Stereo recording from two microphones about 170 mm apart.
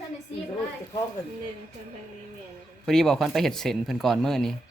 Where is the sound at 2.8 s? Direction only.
5° left (ahead or behind).